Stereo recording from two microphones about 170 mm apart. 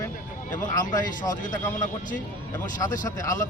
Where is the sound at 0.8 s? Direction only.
25° left (ahead or behind).